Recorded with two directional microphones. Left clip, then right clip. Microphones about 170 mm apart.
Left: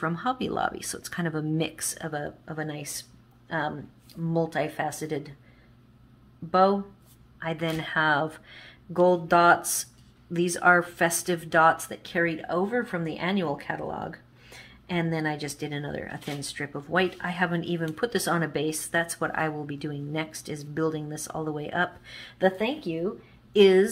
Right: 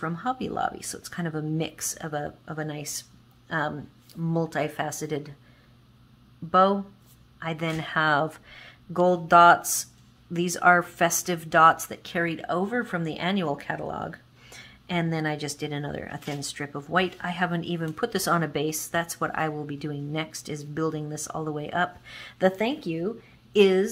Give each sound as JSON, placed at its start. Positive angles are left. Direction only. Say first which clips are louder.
{"t": 0.0, "sound": "speech", "louder": "left 1 dB", "side_deg": -5}
{"t": 6.5, "sound": "speech", "louder": "right 1 dB", "side_deg": -25}
{"t": 22.6, "sound": "speech", "louder": "right 1 dB", "side_deg": -40}
{"t": 23.5, "sound": "speech", "louder": "left 1 dB", "side_deg": -30}